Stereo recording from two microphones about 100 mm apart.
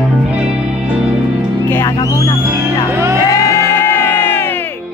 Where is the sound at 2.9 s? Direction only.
25° right (ahead or behind).